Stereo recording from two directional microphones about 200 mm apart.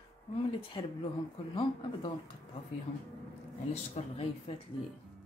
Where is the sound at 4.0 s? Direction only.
35° left (ahead or behind).